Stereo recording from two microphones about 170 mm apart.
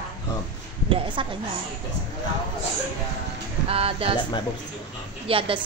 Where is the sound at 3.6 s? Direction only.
35° right (ahead or behind).